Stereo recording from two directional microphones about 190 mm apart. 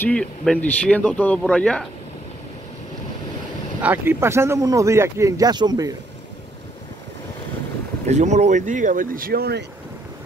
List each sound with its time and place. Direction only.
0.0 s speech: 5° left (ahead or behind)
3.8 s speech: 10° right (ahead or behind)
8.1 s speech: 35° right (ahead or behind); by 9.7 s 55° right (ahead or behind)